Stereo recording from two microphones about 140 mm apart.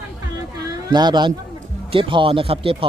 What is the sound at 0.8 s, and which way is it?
Speech, 30° right (ahead or behind).